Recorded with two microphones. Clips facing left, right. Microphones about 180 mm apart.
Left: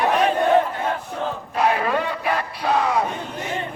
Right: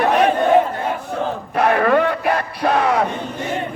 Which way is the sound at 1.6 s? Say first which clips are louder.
Right 6 dB; 60° right (ahead or behind).